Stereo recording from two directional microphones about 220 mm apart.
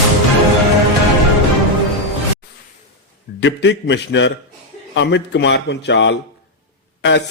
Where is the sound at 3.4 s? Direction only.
50° left (ahead or behind).